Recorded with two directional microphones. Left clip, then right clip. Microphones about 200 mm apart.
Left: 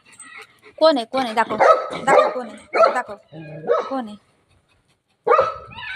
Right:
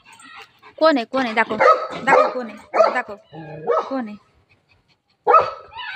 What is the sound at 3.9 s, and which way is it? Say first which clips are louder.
Speech: even; 15° right (ahead or behind).